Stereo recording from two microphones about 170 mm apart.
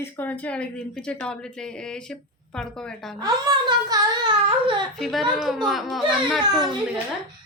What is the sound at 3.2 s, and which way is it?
Speech, 25° right (ahead or behind).